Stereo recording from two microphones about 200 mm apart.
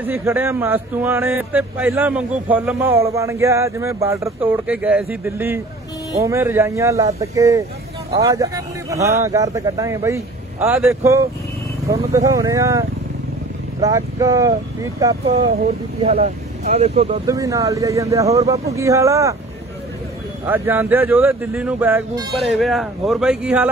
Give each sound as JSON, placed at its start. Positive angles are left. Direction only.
{"t": 0.0, "sound": "speech", "side_deg": -10}
{"t": 15.2, "sound": "speech", "side_deg": -30}
{"t": 17.3, "sound": "speech", "side_deg": -15}
{"t": 20.4, "sound": "speech", "side_deg": -10}